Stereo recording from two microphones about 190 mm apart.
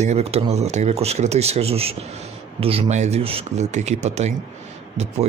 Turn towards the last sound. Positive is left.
turn(degrees=-35)  # may be behind; listen again after turning